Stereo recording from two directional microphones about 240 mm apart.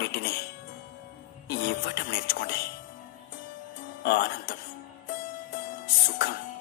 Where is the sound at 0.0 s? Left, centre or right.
Left.